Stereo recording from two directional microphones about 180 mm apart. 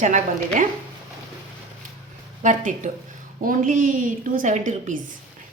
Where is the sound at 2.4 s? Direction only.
45° right (ahead or behind).